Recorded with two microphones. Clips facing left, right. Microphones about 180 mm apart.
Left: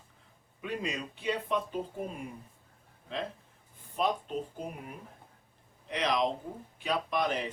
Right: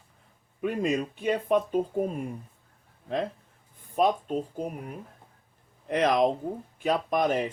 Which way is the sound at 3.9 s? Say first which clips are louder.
Right 6 dB; 50° right (ahead or behind).